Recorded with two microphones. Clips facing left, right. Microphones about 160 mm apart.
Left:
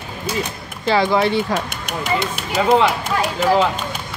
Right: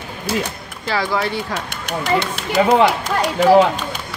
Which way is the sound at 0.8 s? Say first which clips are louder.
Left 4 dB; 20° left (ahead or behind).